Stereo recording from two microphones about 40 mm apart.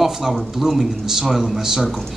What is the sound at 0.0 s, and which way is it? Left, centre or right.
A man's voice, centre.